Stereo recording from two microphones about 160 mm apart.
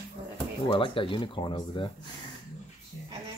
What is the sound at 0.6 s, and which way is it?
Speech, 35° left (ahead or behind).